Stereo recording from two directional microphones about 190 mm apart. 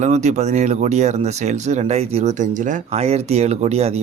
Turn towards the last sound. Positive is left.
turn(degrees=-35)  # may be behind; listen again after turning